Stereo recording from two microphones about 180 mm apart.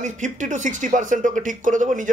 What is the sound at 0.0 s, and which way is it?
Speech, 45° right (ahead or behind).